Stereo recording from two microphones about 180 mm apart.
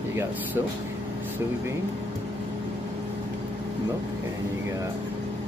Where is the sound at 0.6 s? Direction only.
15° right (ahead or behind).